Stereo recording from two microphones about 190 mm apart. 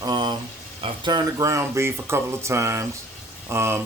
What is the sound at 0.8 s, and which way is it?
Speech, 25° right (ahead or behind).